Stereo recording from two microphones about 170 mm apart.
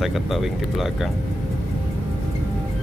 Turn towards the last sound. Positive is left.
turn(degrees=0)  # may be behind; listen again after turning